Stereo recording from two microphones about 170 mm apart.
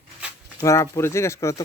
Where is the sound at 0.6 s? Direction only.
15° left (ahead or behind).